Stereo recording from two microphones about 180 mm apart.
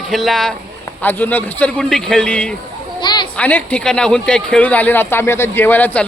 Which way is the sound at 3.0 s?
25° left (ahead or behind).